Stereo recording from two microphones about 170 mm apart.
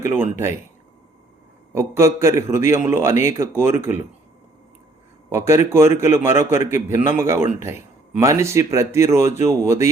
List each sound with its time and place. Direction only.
0.3 s a man's voice: 15° right (ahead or behind)
1.7 s a man's voice: 15° right (ahead or behind)
5.5 s a man's voice: 15° right (ahead or behind)